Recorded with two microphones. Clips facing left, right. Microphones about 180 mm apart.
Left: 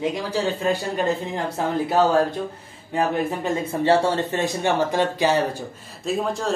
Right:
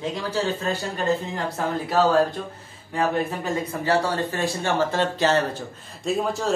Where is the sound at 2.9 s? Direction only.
20° left (ahead or behind).